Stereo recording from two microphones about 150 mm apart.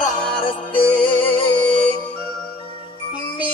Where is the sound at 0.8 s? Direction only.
10° left (ahead or behind).